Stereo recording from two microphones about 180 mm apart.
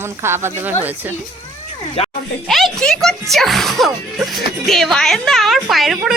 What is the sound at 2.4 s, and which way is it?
Speech, centre (ahead or behind).